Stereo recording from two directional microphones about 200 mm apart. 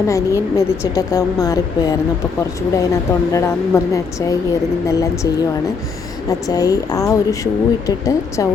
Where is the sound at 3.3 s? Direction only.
15° left (ahead or behind).